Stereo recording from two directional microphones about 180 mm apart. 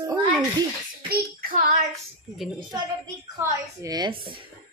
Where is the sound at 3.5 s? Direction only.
20° right (ahead or behind).